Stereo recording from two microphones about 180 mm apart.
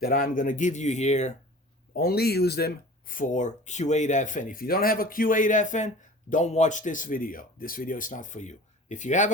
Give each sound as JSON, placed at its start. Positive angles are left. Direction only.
{"t": 0.0, "sound": "speech", "side_deg": 50}
{"t": 1.9, "sound": "speech", "side_deg": 60}